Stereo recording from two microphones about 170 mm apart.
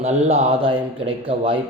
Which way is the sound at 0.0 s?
40° right (ahead or behind).